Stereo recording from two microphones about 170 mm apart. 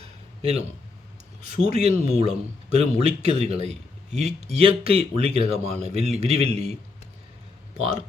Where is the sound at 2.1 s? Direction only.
40° right (ahead or behind).